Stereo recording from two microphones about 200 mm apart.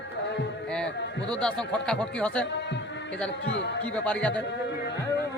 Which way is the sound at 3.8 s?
5° left (ahead or behind).